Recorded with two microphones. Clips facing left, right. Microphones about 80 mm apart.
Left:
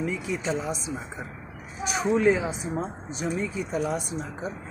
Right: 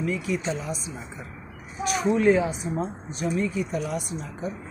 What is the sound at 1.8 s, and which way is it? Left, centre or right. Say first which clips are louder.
Speech: right 1 dB; centre.